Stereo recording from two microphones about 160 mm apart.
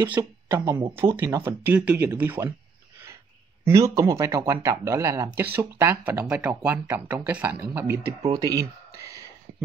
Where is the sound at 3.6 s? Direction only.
20° right (ahead or behind).